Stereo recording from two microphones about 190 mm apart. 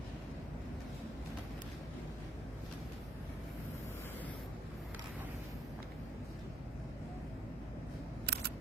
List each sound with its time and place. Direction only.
8.3 s single-lens reflex camera: 60° right (ahead or behind)